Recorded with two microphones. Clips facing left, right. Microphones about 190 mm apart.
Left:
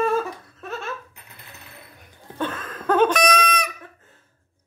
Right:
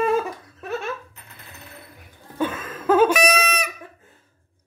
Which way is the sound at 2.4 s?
10° right (ahead or behind).